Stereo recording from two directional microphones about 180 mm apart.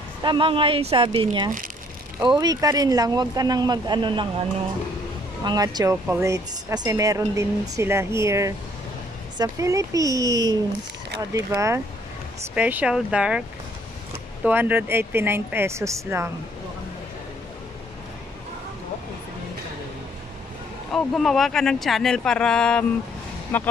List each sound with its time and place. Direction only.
0.2 s speech: 25° right (ahead or behind); by 13.4 s 5° right (ahead or behind)
14.4 s speech: 10° right (ahead or behind)
20.9 s speech: centre (ahead or behind)